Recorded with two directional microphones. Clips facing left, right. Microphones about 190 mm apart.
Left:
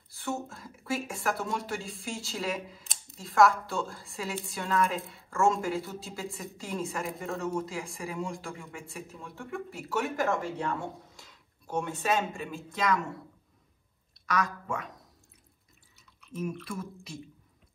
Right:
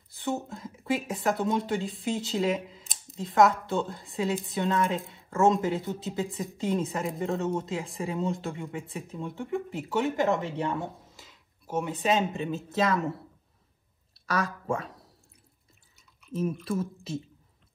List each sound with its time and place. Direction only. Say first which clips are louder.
0.1 s speech: right 3 dB; 20° right (ahead or behind)
11.1 s a sound: right 1 dB; 5° right (ahead or behind)
11.9 s speech: right 4 dB; 20° right (ahead or behind)
14.1 s speech: right 1 dB; 30° right (ahead or behind)
16.3 s speech: right 6 dB; 30° right (ahead or behind)